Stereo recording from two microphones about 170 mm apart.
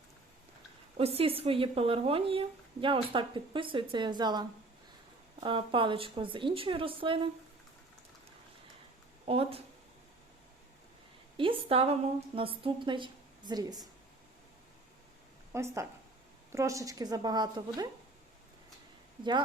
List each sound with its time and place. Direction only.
0.9 s a woman's voice: 35° right (ahead or behind)
9.2 s speech: 35° right (ahead or behind)
11.3 s a woman's voice: 35° right (ahead or behind)
15.5 s a woman's voice: 15° right (ahead or behind)